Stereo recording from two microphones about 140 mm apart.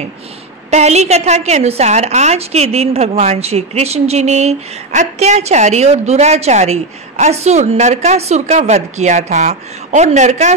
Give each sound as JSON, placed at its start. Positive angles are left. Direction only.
{"t": 0.7, "sound": "a woman's voice", "side_deg": -50}